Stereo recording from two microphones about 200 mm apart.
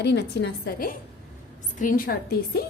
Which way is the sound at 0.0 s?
55° left (ahead or behind).